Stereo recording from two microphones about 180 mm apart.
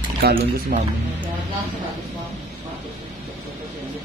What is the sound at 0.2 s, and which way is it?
Speech, 55° right (ahead or behind).